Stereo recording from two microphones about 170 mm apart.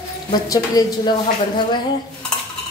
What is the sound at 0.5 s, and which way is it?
A woman's voice, 25° left (ahead or behind).